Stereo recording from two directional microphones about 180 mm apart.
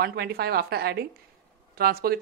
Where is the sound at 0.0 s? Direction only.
60° right (ahead or behind).